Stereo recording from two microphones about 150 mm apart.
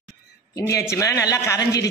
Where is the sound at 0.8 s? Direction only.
20° left (ahead or behind).